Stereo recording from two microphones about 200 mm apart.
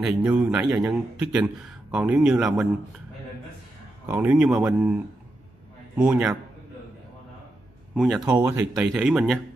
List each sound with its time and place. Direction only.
0.0 s speech: 5° right (ahead or behind)
4.1 s speech: 10° right (ahead or behind)
7.9 s speech: centre (ahead or behind)
8.3 s speech: 20° right (ahead or behind)
8.9 s speech: centre (ahead or behind)